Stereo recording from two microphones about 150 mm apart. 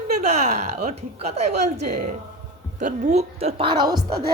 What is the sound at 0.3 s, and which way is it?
A woman's voice, 45° right (ahead or behind).